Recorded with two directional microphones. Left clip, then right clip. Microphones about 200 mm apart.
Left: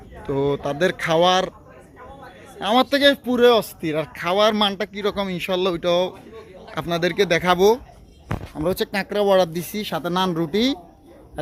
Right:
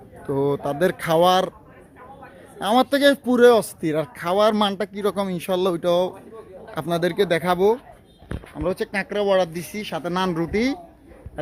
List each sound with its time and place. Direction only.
0.2 s a man's voice: 10° right (ahead or behind)
2.6 s a man's voice: 15° right (ahead or behind); by 10.8 s 5° left (ahead or behind)